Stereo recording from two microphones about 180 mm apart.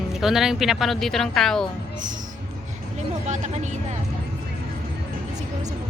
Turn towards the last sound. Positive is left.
turn(degrees=-40)  # may be behind; listen again after turning